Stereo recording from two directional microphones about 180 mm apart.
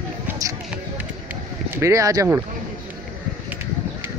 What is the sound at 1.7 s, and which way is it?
Speech, 15° right (ahead or behind).